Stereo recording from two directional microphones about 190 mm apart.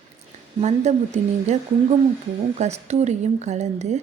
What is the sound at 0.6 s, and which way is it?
Speech, 35° right (ahead or behind).